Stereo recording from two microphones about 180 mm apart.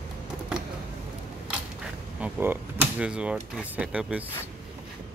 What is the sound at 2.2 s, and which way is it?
Speech, 10° right (ahead or behind).